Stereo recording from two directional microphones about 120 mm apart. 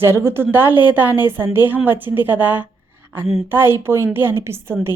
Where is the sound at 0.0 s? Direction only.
20° right (ahead or behind).